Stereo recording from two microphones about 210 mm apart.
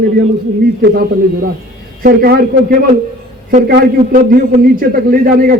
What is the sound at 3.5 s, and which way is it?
A man's voice, 45° right (ahead or behind).